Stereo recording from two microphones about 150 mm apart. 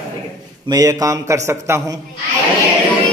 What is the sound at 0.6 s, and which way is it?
A man's voice, 25° right (ahead or behind).